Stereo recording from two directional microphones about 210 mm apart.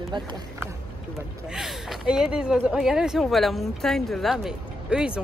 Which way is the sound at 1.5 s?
Centre (ahead or behind).